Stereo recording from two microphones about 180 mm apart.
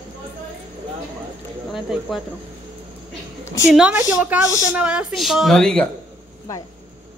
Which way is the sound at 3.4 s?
15° left (ahead or behind).